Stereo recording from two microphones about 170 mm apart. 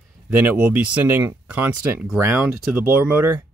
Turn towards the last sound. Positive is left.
turn(degrees=-15)  # may be behind; listen again after turning